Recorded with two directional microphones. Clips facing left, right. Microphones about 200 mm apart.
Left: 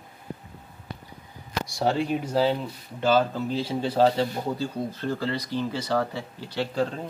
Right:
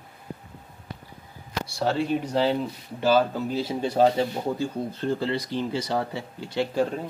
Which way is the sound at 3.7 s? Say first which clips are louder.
Right 1 dB; 15° right (ahead or behind).